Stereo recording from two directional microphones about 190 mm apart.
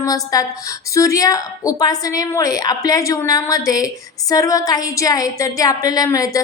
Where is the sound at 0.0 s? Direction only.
20° left (ahead or behind).